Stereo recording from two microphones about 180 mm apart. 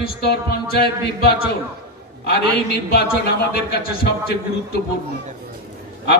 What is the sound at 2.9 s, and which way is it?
Music, 60° left (ahead or behind).